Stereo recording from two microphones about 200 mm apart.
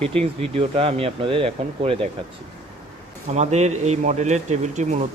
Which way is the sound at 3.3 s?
35° right (ahead or behind).